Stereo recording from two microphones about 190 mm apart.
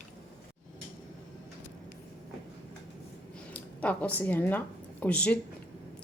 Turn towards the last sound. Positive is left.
turn(degrees=5)  # may be behind; listen again after turning